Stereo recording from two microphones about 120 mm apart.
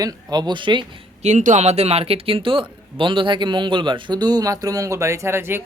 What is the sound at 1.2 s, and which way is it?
A man's voice, 80° right.